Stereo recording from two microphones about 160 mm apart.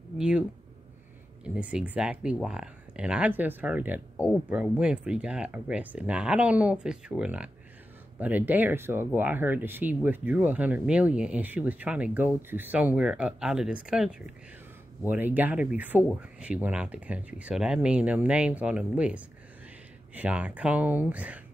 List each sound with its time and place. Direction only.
0.2 s speech: 5° right (ahead or behind)